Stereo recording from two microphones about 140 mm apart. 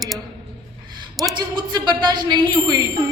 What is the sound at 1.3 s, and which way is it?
Speech, 30° right (ahead or behind).